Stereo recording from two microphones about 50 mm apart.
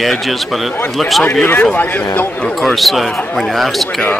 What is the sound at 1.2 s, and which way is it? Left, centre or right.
Speech, left.